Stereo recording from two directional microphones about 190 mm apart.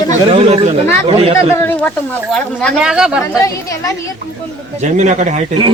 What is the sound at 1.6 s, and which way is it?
Speech, 10° left (ahead or behind).